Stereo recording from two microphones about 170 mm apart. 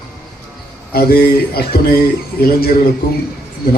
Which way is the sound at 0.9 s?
65° left (ahead or behind).